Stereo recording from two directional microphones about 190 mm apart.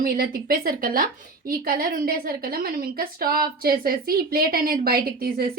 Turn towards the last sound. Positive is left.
turn(degrees=-50)  # may be behind; listen again after turning